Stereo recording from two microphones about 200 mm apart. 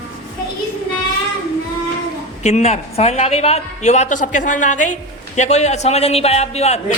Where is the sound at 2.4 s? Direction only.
35° left (ahead or behind).